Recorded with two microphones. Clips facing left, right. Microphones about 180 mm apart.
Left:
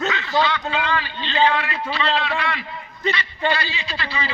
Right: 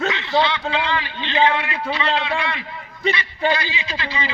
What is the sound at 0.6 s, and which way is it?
A man's voice, 15° right (ahead or behind).